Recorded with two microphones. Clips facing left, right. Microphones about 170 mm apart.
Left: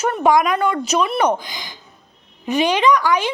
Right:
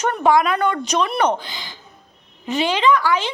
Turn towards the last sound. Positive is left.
turn(degrees=15)  # may be behind; listen again after turning